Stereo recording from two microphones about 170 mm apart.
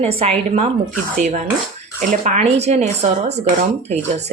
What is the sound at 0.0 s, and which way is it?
Speech, 35° right (ahead or behind).